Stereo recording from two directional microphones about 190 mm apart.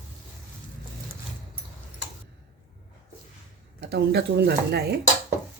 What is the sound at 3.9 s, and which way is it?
Speech, 65° right (ahead or behind).